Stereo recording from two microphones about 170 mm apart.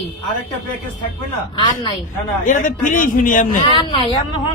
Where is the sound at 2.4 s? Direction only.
50° left (ahead or behind).